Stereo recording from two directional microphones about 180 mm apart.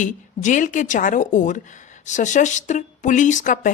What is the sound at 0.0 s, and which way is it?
A woman's voice, 45° left (ahead or behind).